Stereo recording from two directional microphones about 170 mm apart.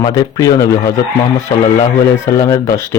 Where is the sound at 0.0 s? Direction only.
25° left (ahead or behind).